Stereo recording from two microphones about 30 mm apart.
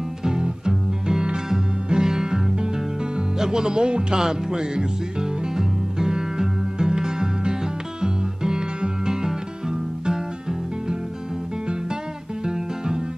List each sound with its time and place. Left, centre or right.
0.2 s music: right
3.3 s speech: centre
4.1 s music: centre
12.4 s music: right